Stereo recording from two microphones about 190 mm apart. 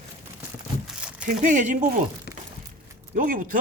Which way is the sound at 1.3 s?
40° right (ahead or behind).